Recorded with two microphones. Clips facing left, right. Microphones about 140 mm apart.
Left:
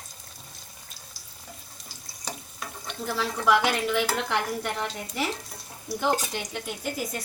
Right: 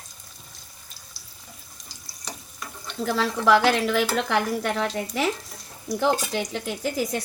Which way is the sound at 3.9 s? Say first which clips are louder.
Right 3 dB; 90° right.